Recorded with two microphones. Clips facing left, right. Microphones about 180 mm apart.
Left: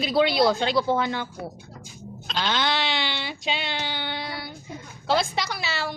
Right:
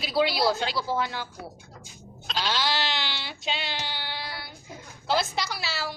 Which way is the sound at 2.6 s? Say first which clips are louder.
Left 3 dB; 55° left (ahead or behind).